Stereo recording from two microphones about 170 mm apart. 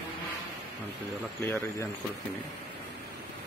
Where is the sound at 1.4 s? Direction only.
15° left (ahead or behind).